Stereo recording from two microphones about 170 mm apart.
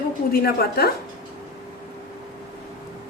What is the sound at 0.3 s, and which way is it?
Speech, 65° left (ahead or behind).